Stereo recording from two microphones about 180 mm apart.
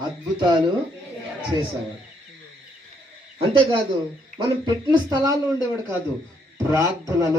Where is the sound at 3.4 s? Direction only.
30° right (ahead or behind).